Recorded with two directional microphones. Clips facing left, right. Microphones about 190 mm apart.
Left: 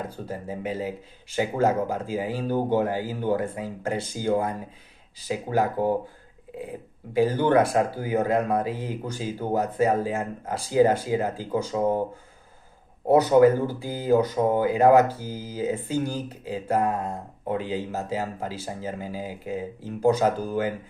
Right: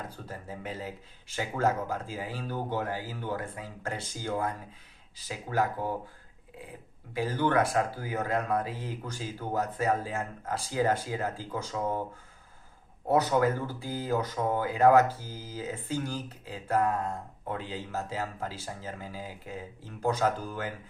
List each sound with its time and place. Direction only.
0.3 s speech: 15° left (ahead or behind)
7.1 s speech: 20° left (ahead or behind)
13.1 s speech: 15° left (ahead or behind)